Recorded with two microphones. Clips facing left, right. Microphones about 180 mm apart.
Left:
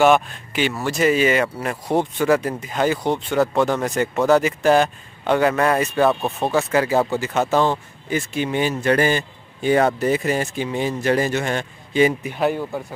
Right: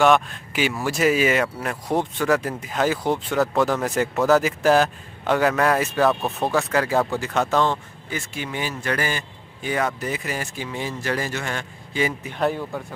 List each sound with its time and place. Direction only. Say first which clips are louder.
0.0 s speech: left 2 dB; centre (ahead or behind)
8.1 s a man's voice: left 8 dB; 20° left (ahead or behind)
12.3 s speech: left 2 dB; 5° left (ahead or behind)